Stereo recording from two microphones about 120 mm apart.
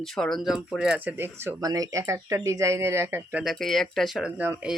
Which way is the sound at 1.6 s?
30° right (ahead or behind).